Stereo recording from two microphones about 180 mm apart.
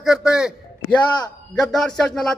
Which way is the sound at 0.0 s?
5° right (ahead or behind).